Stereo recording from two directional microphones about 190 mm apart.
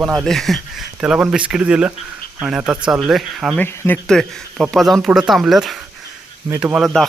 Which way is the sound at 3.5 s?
10° left (ahead or behind).